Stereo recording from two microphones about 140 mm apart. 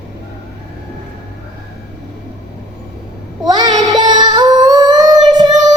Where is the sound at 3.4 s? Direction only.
30° right (ahead or behind).